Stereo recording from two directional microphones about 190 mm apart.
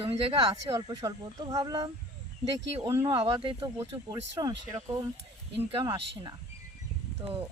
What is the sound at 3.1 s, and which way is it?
Speech, 25° right (ahead or behind).